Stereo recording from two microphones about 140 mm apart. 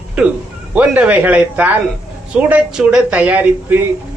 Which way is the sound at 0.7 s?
10° right (ahead or behind).